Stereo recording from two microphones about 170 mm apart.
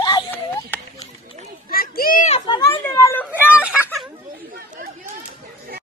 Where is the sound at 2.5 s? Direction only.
20° left (ahead or behind).